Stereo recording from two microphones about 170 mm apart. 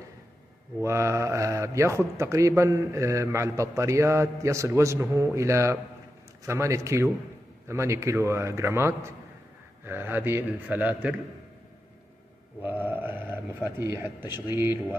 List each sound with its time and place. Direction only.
0.7 s speech: 15° right (ahead or behind)
12.6 s a sound: 10° right (ahead or behind)
13.7 s speech: 15° right (ahead or behind)